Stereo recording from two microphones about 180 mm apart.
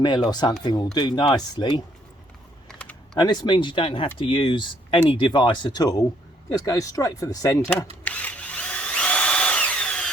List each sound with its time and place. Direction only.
0.0 s speech: 25° left (ahead or behind)
2.6 s typing: 5° left (ahead or behind)
3.2 s speech: 25° left (ahead or behind)
8.0 s drill: 10° left (ahead or behind)